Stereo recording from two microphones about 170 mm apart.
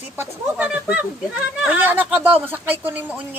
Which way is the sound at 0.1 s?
10° right (ahead or behind).